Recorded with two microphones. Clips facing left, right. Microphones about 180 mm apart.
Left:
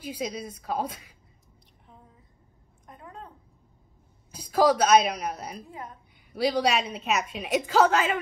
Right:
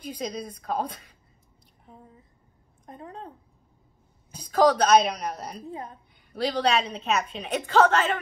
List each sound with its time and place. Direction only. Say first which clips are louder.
0.0 s speech: even; 5° left (ahead or behind)
2.9 s a sound: right 4 dB; 35° right (ahead or behind)
4.4 s a woman's voice: right 1 dB; 5° left (ahead or behind)
5.7 s a woman's voice: right 4 dB; 35° right (ahead or behind)
6.3 s a woman's voice: even; 10° left (ahead or behind)